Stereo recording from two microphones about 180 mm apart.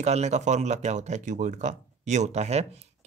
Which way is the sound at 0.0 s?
40° right (ahead or behind).